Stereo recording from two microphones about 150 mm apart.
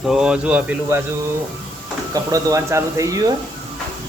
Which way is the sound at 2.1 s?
20° right (ahead or behind).